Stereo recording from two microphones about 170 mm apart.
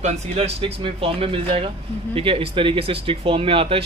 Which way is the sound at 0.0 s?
35° right (ahead or behind).